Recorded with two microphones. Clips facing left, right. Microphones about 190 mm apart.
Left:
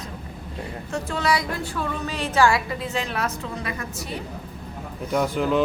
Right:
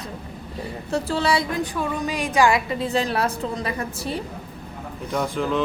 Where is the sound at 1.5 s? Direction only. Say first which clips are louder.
Right 3 dB; 15° right (ahead or behind); by 4.1 s 30° right (ahead or behind).